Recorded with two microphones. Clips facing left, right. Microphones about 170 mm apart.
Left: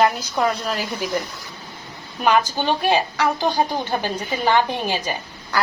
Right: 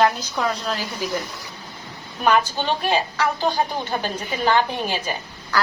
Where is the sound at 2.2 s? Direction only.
15° left (ahead or behind).